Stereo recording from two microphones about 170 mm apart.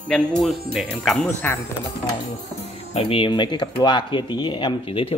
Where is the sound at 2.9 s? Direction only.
35° left (ahead or behind).